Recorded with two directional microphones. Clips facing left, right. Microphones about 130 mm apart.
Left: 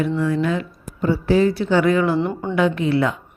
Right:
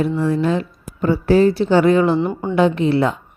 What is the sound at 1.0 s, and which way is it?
A woman's voice, 45° right (ahead or behind).